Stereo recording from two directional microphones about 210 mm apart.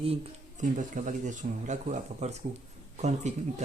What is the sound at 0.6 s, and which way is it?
A woman's voice, 35° right (ahead or behind).